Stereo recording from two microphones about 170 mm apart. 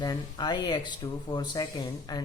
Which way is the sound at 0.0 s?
25° left (ahead or behind).